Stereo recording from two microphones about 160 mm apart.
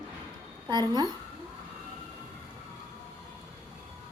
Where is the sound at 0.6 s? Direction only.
25° right (ahead or behind).